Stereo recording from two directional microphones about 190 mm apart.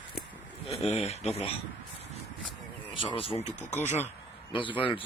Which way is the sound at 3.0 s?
30° left (ahead or behind).